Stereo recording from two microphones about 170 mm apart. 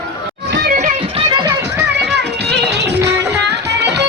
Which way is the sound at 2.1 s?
85° right.